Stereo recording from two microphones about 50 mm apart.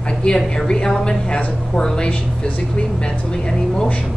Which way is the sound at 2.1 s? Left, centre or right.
Left.